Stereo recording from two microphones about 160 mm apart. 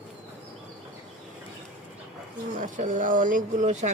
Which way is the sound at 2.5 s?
55° right (ahead or behind).